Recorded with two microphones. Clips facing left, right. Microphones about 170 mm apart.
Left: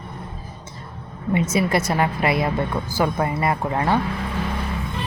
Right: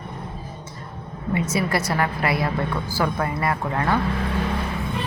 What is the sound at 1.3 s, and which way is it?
A woman's voice, 25° left (ahead or behind).